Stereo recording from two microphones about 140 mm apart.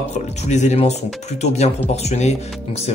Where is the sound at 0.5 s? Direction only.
55° left (ahead or behind).